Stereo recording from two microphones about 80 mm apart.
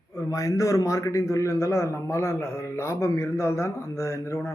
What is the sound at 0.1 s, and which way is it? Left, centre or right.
A man's voice, left.